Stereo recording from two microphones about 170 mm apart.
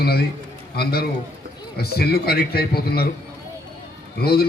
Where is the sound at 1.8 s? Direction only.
65° left (ahead or behind).